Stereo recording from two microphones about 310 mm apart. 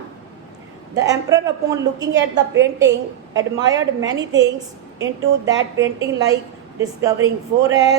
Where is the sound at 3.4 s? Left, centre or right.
Centre.